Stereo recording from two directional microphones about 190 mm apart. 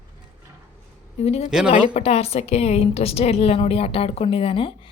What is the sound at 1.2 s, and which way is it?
Speech, 35° left (ahead or behind).